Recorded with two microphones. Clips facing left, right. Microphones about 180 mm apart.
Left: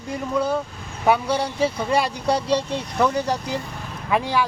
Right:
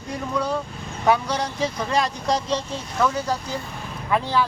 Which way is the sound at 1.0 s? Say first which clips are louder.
Left 1 dB; 10° left (ahead or behind).